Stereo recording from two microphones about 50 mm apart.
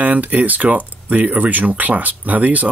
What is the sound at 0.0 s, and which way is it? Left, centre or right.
Speech, right.